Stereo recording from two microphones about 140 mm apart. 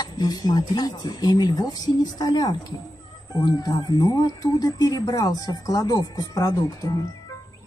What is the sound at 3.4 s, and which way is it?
Speech, 30° left (ahead or behind).